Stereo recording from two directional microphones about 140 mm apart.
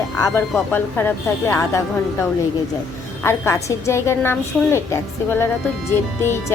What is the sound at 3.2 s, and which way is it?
A woman's voice, 20° left (ahead or behind).